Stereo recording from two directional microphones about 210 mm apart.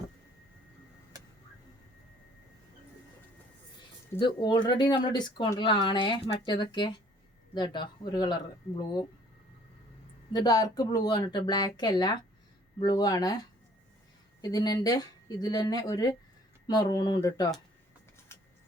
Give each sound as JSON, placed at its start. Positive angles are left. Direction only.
{"t": 4.1, "sound": "speech", "side_deg": 20}
{"t": 10.3, "sound": "speech", "side_deg": 15}
{"t": 18.3, "sound": "a sound", "side_deg": 10}